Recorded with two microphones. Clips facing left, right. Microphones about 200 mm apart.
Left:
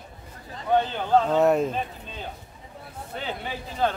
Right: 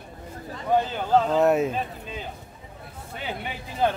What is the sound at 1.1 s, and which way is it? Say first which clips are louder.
Speech: even; centre (ahead or behind).